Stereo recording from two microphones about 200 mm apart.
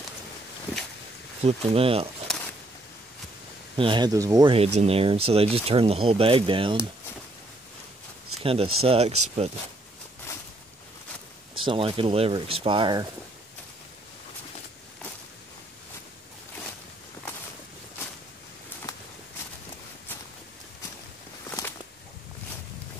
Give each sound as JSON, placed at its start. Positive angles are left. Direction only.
{"t": 1.4, "sound": "speech", "side_deg": -30}
{"t": 3.7, "sound": "speech", "side_deg": -25}
{"t": 4.6, "sound": "speech", "side_deg": -30}
{"t": 8.5, "sound": "speech", "side_deg": -30}
{"t": 11.5, "sound": "speech", "side_deg": -25}
{"t": 21.5, "sound": "a sound", "side_deg": 15}